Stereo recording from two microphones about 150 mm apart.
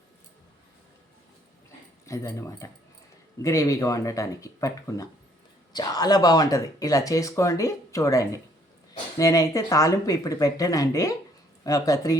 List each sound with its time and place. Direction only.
2.0 s speech: 20° left (ahead or behind)